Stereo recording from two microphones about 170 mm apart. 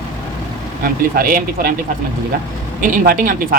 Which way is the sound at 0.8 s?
60° right (ahead or behind).